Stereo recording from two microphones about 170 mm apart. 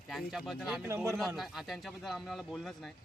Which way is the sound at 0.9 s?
15° right (ahead or behind).